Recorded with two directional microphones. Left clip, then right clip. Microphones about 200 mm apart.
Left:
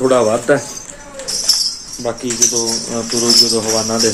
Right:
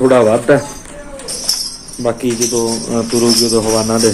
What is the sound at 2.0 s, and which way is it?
Speech, centre (ahead or behind).